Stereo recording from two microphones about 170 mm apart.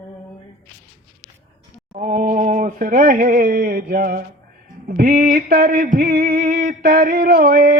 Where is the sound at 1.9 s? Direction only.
45° right (ahead or behind).